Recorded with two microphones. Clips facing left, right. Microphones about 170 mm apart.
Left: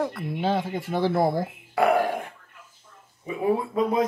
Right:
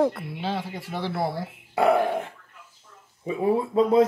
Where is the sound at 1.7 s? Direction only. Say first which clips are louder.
Right 1 dB; 25° right (ahead or behind).